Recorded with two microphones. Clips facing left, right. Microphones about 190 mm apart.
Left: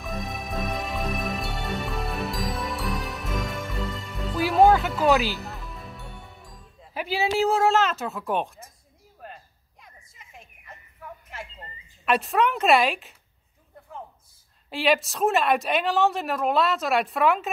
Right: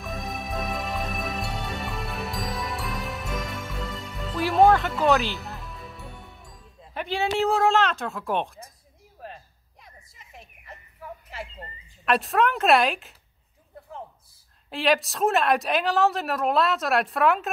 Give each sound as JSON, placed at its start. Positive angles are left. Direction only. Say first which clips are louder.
{"t": 0.0, "sound": "music", "louder": "even", "side_deg": 0}
{"t": 12.0, "sound": "a woman's voice", "louder": "even", "side_deg": 0}
{"t": 14.7, "sound": "a woman's voice", "louder": "even", "side_deg": 0}